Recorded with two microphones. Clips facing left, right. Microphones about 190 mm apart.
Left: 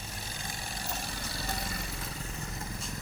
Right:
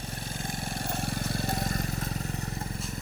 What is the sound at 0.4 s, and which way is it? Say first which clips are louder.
Vehicle: right 6 dB; 55° right (ahead or behind).